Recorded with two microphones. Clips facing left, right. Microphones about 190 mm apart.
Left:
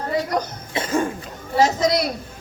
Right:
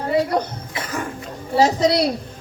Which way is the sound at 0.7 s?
25° left (ahead or behind).